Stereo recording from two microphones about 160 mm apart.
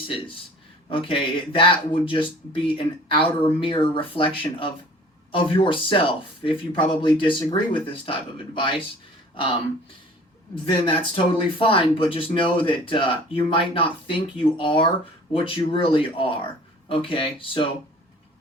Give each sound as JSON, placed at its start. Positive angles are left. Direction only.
{"t": 0.1, "sound": "speech", "side_deg": 35}